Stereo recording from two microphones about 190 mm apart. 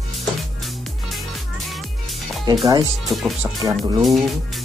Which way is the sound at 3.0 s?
Centre (ahead or behind).